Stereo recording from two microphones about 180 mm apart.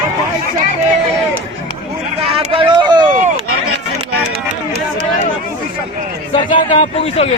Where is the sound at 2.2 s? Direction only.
30° right (ahead or behind).